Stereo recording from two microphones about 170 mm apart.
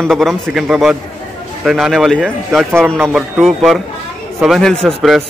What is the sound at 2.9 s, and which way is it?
Speech, 15° right (ahead or behind).